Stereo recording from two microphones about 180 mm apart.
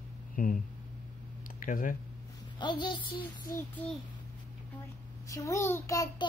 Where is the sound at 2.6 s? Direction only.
25° left (ahead or behind).